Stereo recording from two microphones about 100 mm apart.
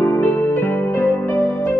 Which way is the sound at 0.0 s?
25° left (ahead or behind).